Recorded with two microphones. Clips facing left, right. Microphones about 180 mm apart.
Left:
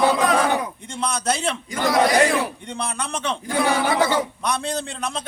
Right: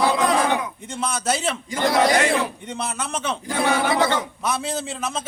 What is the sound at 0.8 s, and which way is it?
Speech, 5° right (ahead or behind).